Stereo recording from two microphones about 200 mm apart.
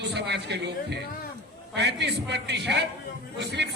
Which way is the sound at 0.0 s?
55° right (ahead or behind).